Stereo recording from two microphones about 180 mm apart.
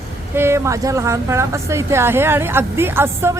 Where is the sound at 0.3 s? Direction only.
15° right (ahead or behind).